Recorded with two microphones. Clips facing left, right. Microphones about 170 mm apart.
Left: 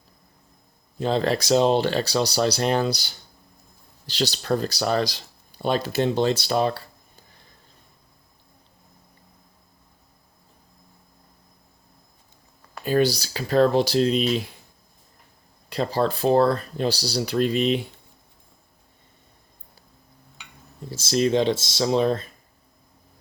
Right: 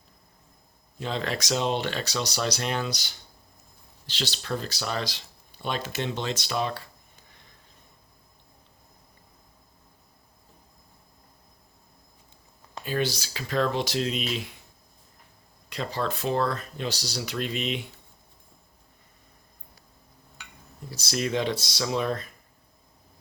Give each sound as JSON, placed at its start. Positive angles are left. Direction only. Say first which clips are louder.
{"t": 0.9, "sound": "speech", "louder": "left 8 dB", "side_deg": 35}
{"t": 12.8, "sound": "speech", "louder": "left 8 dB", "side_deg": 40}
{"t": 15.7, "sound": "speech", "louder": "left 7 dB", "side_deg": 35}
{"t": 20.9, "sound": "speech", "louder": "left 7 dB", "side_deg": 25}